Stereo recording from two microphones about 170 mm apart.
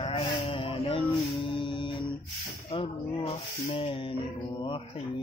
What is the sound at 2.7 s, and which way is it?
Snake, 35° left (ahead or behind).